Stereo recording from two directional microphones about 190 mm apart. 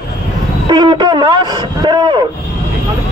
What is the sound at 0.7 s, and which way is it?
Speech, 25° right (ahead or behind).